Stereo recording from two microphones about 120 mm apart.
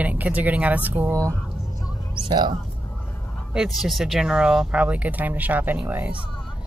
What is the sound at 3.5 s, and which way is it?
Speech, centre (ahead or behind).